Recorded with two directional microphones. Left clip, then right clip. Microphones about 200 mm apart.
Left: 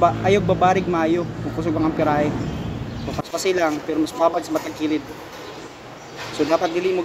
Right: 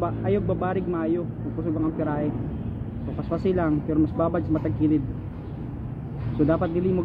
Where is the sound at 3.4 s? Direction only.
10° left (ahead or behind).